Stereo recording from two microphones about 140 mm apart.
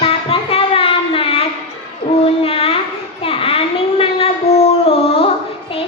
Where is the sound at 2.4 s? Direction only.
40° left (ahead or behind).